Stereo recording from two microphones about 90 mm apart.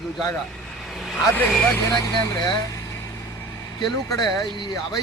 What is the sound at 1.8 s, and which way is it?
Speech, 40° left (ahead or behind).